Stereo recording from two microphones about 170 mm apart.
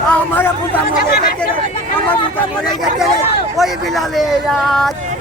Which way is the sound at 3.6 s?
Centre (ahead or behind).